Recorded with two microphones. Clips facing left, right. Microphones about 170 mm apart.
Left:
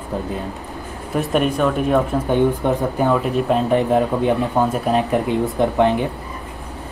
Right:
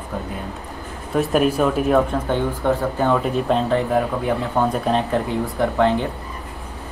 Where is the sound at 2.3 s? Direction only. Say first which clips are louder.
Left 3 dB; 15° left (ahead or behind).